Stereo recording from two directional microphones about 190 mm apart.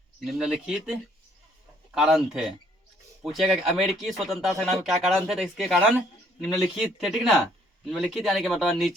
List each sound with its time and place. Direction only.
0.3 s speech: 5° right (ahead or behind)
2.0 s speech: centre (ahead or behind)